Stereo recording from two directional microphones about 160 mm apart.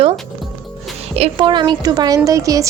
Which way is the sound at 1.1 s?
35° right (ahead or behind).